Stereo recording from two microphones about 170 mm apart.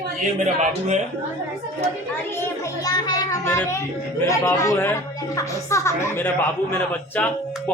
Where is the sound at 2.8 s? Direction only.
20° left (ahead or behind).